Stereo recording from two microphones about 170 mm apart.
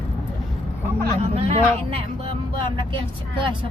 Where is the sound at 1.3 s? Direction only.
35° right (ahead or behind).